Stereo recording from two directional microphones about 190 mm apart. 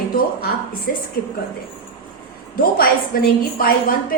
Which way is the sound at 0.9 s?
50° left (ahead or behind).